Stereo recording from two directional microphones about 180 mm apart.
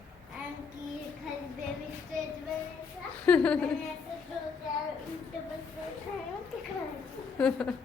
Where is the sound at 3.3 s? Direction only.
5° left (ahead or behind).